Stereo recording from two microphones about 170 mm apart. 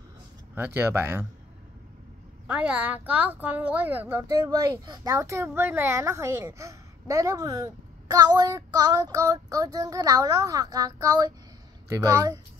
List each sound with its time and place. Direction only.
0.6 s a woman's voice: 15° right (ahead or behind)
2.4 s a woman's voice: 5° right (ahead or behind)